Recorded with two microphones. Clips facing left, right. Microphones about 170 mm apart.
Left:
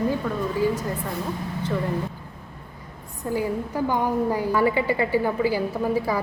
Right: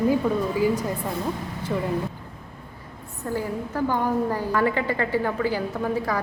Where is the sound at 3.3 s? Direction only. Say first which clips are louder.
Left 2 dB; 15° left (ahead or behind).